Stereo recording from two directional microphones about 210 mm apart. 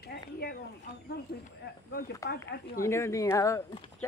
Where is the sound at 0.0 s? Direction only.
50° left (ahead or behind).